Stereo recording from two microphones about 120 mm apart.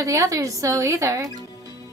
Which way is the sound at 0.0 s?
25° right (ahead or behind).